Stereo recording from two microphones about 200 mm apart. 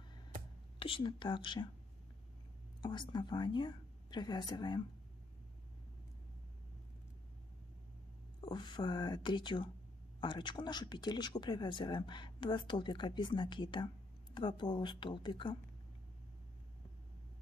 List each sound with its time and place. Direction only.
0.7 s speech: 25° left (ahead or behind)
2.8 s speech: 20° left (ahead or behind)
8.4 s speech: 20° left (ahead or behind)